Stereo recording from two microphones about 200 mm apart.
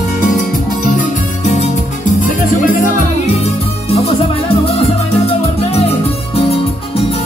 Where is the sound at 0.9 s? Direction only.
35° left (ahead or behind).